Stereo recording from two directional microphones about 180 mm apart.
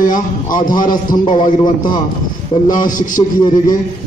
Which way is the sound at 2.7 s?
45° left (ahead or behind).